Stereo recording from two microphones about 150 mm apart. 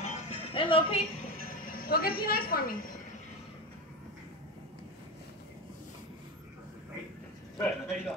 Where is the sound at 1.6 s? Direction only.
75° left (ahead or behind).